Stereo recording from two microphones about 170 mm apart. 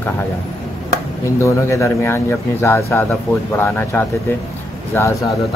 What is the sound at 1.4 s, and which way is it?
Speech, 15° left (ahead or behind).